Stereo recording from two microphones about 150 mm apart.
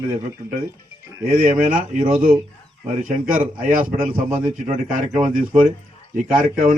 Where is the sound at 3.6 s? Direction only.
65° right (ahead or behind).